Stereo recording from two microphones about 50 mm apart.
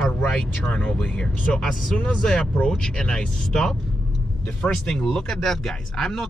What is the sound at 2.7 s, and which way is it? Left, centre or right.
Speech, centre.